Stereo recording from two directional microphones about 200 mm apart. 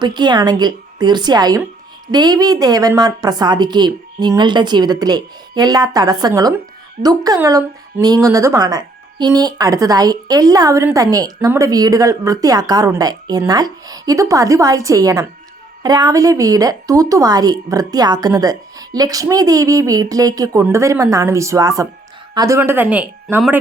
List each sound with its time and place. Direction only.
0.0 s a woman's voice: 20° right (ahead or behind)